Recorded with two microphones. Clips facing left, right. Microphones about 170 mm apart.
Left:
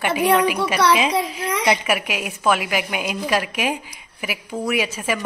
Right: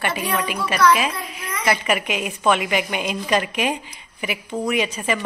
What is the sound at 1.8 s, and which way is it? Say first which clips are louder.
A woman's voice: right 1 dB; 5° left (ahead or behind).